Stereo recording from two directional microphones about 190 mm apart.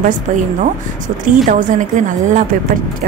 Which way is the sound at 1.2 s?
45° right (ahead or behind).